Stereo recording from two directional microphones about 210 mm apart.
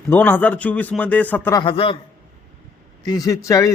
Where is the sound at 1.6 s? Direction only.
25° left (ahead or behind).